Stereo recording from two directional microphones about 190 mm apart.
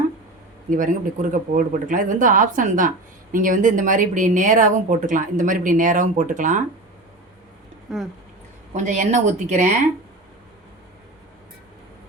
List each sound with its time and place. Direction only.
0.7 s a woman's voice: 45° right (ahead or behind)
7.9 s speech: centre (ahead or behind)
8.7 s speech: 40° right (ahead or behind)